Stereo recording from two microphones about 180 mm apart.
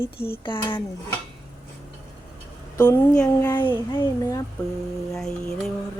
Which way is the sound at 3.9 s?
25° left (ahead or behind).